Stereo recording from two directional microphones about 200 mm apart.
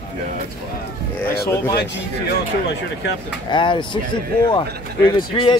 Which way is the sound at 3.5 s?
25° left (ahead or behind).